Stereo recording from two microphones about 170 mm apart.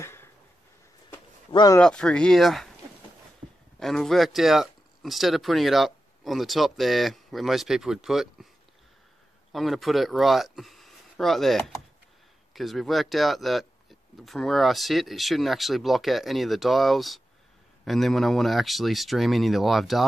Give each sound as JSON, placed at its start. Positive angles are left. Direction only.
{"t": 0.0, "sound": "a sound", "side_deg": 15}
{"t": 1.5, "sound": "speech", "side_deg": 25}
{"t": 1.8, "sound": "speech", "side_deg": 5}
{"t": 3.8, "sound": "speech", "side_deg": 0}
{"t": 9.5, "sound": "speech", "side_deg": 0}